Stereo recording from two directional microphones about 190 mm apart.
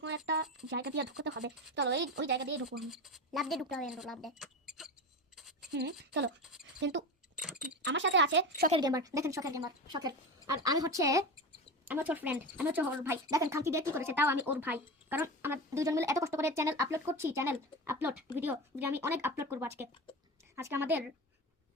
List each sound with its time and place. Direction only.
0.3 s speech: 65° right (ahead or behind)
2.8 s speech: centre (ahead or behind)
5.4 s a sound: centre (ahead or behind)
5.7 s speech: 65° right (ahead or behind)
6.4 s a sound: centre (ahead or behind)
6.7 s speech: 70° right (ahead or behind)
7.3 s a sound: 5° right (ahead or behind)
7.9 s speech: 75° right (ahead or behind)
8.8 s a woman's voice: 20° right (ahead or behind)